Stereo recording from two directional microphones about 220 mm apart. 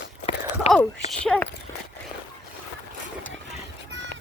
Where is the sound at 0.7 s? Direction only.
30° left (ahead or behind).